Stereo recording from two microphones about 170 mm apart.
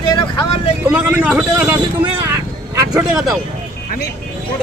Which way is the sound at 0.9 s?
10° right (ahead or behind).